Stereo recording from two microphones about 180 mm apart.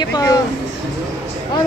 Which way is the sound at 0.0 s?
20° left (ahead or behind).